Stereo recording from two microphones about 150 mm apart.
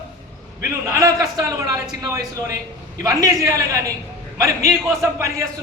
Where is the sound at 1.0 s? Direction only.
20° right (ahead or behind).